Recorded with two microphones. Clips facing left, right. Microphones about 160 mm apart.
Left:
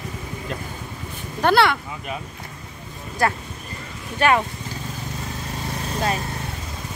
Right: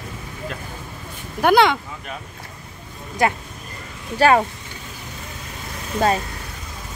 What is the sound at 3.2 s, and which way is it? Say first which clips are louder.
Speech: right 2 dB; 20° right (ahead or behind).